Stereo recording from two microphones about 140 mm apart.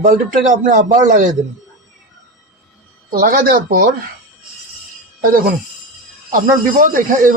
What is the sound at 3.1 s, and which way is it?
Speech, 80° right.